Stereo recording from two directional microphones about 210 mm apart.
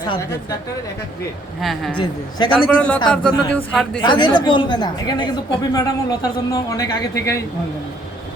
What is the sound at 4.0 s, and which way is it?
A man's voice, 20° left (ahead or behind).